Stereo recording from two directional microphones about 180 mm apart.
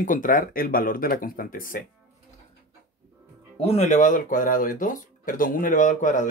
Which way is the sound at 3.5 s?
35° left (ahead or behind).